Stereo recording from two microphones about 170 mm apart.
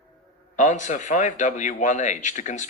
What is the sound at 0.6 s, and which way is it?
A man's voice, 45° left (ahead or behind).